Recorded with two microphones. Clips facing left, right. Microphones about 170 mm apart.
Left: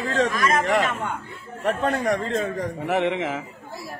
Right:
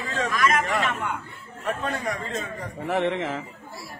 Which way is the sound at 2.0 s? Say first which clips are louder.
Left 7 dB; 60° left (ahead or behind).